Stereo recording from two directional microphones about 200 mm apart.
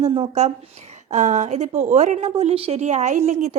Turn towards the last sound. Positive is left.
turn(degrees=-35)  # may be behind; listen again after turning